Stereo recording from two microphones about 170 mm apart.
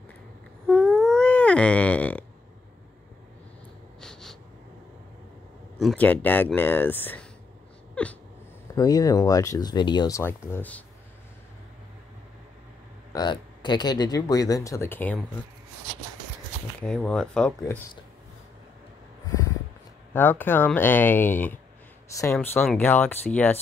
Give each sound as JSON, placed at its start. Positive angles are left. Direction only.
{"t": 0.7, "sound": "a sound", "side_deg": 5}
{"t": 4.0, "sound": "snort", "side_deg": 0}
{"t": 5.8, "sound": "speech", "side_deg": 5}
{"t": 7.9, "sound": "dog", "side_deg": 10}
{"t": 8.7, "sound": "speech", "side_deg": 20}
{"t": 13.1, "sound": "speech", "side_deg": 25}
{"t": 16.8, "sound": "speech", "side_deg": 5}
{"t": 20.1, "sound": "speech", "side_deg": 10}